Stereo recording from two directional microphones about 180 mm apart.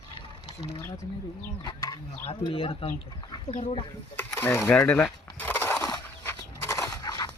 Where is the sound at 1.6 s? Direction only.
20° left (ahead or behind).